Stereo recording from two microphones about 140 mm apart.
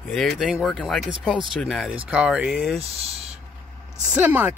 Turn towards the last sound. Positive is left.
turn(degrees=-10)  # may be behind; listen again after turning